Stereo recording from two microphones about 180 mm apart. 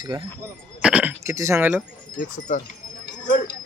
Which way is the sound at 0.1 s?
25° right (ahead or behind).